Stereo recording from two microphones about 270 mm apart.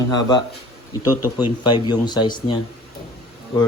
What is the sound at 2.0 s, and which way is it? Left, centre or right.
Speech, centre.